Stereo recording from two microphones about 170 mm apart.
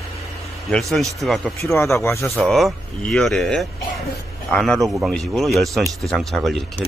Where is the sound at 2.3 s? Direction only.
Centre (ahead or behind).